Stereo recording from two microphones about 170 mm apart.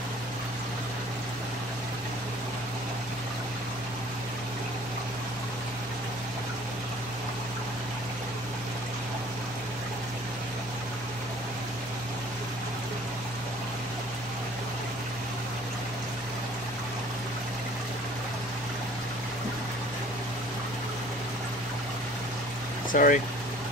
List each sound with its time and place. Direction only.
22.8 s speech: 50° left (ahead or behind)